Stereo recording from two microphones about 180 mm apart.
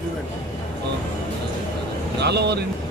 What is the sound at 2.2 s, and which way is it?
Speech, 65° right (ahead or behind).